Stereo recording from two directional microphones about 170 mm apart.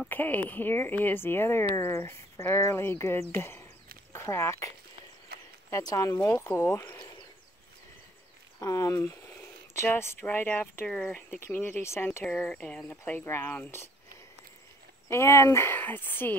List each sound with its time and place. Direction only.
0.0 s speech: 10° left (ahead or behind)
5.3 s a sound: 65° right (ahead or behind)
5.7 s speech: 20° left (ahead or behind)
8.5 s a sound: 20° left (ahead or behind)
10.2 s speech: 10° left (ahead or behind)
15.0 s speech: 15° left (ahead or behind)